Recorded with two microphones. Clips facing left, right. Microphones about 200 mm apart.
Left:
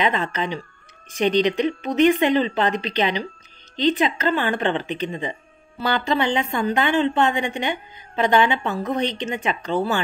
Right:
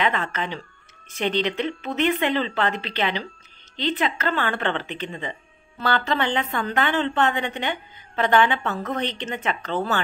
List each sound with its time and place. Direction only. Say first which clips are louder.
0.0 s a woman's voice: left 2 dB; 15° left (ahead or behind)